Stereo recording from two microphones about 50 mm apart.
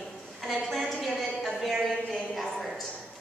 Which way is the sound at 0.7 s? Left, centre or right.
Centre.